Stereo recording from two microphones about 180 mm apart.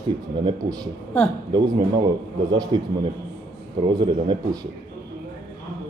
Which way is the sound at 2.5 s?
25° right (ahead or behind).